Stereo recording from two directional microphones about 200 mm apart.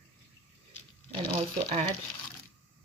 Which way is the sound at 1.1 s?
25° right (ahead or behind).